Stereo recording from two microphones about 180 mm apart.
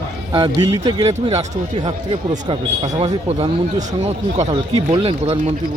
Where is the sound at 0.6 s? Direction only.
20° right (ahead or behind).